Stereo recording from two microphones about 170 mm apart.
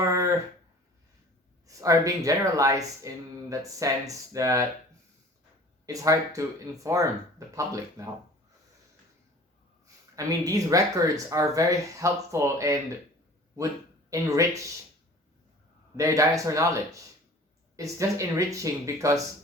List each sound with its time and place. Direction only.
0.0 s a sound: 20° right (ahead or behind)
1.6 s speech: 20° right (ahead or behind)
5.8 s speech: 20° right (ahead or behind)
9.8 s speech: 20° right (ahead or behind)
14.1 s speech: 20° right (ahead or behind)
16.0 s speech: 20° right (ahead or behind)